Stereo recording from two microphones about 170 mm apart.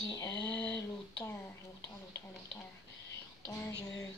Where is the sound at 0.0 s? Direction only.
20° left (ahead or behind).